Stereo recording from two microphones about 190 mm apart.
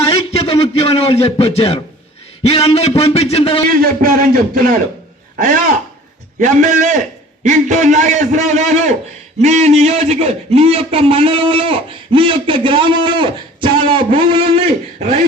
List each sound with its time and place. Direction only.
0.0 s a sound: 30° left (ahead or behind)
2.4 s a man's voice: 30° left (ahead or behind)
3.7 s a man's voice: 45° right (ahead or behind)
6.4 s a man's voice: 40° right (ahead or behind)